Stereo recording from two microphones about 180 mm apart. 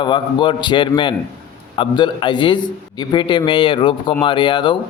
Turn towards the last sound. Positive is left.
turn(degrees=25)  # may be behind; listen again after turning